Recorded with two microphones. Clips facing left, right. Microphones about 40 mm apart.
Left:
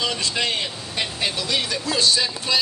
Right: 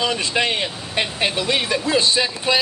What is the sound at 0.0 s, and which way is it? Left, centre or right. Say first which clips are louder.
A woman's voice: right 4 dB; right.